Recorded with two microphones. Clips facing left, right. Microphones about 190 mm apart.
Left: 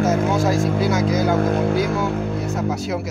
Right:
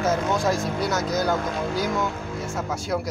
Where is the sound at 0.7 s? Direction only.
25° left (ahead or behind).